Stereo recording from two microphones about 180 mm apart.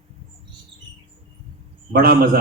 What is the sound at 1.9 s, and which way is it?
Speech, 55° right (ahead or behind).